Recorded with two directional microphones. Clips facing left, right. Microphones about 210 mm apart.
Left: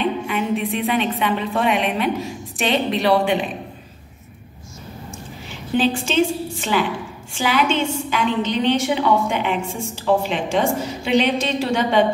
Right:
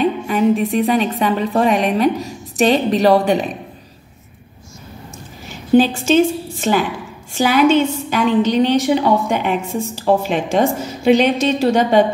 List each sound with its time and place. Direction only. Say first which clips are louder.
0.0 s music: right 6 dB; 40° right (ahead or behind)
1.2 s a woman's voice: right 4 dB; 40° right (ahead or behind)
5.8 s a woman's voice: right 5 dB; 40° right (ahead or behind)